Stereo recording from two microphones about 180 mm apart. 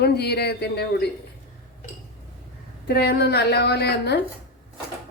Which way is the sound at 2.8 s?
60° left (ahead or behind).